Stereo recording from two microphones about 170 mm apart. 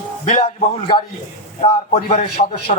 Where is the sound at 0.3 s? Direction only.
30° left (ahead or behind).